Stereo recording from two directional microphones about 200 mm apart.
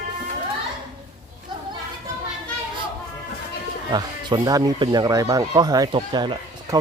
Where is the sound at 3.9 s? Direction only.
20° right (ahead or behind).